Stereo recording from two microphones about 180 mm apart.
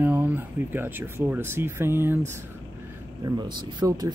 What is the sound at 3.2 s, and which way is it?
Speech, 20° right (ahead or behind).